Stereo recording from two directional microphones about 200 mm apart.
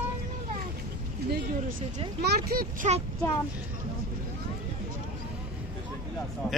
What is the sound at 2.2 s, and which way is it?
Speech, 50° right (ahead or behind).